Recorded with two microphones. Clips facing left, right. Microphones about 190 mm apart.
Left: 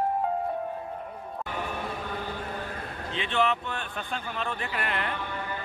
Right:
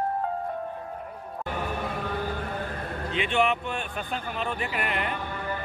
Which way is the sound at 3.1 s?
15° right (ahead or behind).